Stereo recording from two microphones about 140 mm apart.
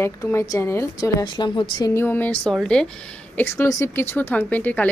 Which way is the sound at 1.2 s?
35° left (ahead or behind).